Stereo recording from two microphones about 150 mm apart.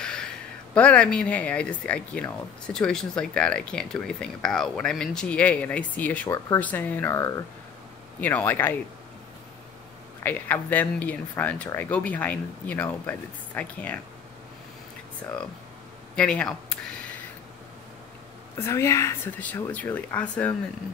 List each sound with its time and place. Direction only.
0.0 s a sound: 5° left (ahead or behind)
0.7 s speech: 10° left (ahead or behind)
6.2 s speech: 25° left (ahead or behind)
6.6 s speech: 10° left (ahead or behind)
10.2 s speech: 10° left (ahead or behind)
15.2 s speech: 10° left (ahead or behind)
18.6 s speech: 15° left (ahead or behind)